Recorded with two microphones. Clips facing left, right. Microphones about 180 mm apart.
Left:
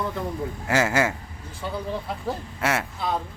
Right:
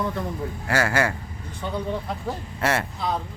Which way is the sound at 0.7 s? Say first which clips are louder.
Left 1 dB; 20° left (ahead or behind).